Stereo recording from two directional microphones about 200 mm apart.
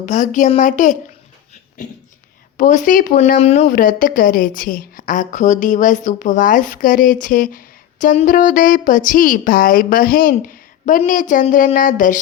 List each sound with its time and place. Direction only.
0.0 s a woman's voice: 40° left (ahead or behind)
2.6 s a woman's voice: 40° left (ahead or behind)